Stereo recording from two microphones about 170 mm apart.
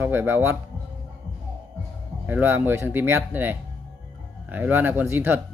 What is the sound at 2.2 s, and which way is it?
Speech, 10° right (ahead or behind).